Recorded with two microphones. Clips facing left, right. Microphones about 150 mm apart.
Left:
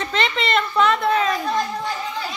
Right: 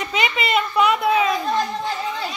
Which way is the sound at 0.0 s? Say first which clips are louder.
Even; 10° right (ahead or behind).